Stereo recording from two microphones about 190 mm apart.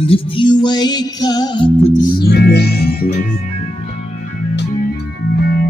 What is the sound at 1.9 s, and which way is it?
Music, 55° left (ahead or behind).